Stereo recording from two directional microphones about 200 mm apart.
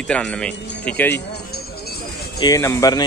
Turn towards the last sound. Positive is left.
turn(degrees=15)  # may be behind; listen again after turning